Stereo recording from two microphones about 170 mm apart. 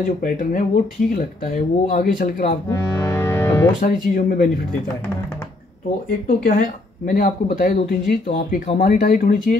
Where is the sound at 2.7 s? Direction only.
20° left (ahead or behind).